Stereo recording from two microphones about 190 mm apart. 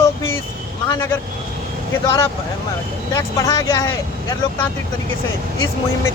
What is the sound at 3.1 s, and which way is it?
Speech, 15° left (ahead or behind).